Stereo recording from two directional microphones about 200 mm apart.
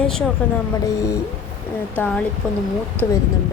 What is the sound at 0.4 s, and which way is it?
Speech, 10° left (ahead or behind).